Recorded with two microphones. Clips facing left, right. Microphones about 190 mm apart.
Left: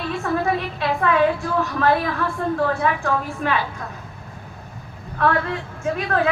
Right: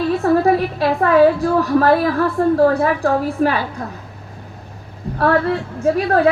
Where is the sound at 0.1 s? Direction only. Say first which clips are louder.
Right 7 dB; 40° right (ahead or behind).